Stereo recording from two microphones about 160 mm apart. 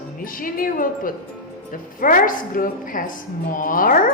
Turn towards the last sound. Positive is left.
turn(degrees=55)  # may be behind; listen again after turning